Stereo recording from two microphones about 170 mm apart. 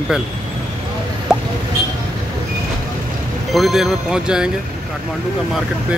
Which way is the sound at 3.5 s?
Centre (ahead or behind).